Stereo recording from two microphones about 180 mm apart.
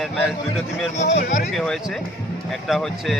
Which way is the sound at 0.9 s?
40° left (ahead or behind).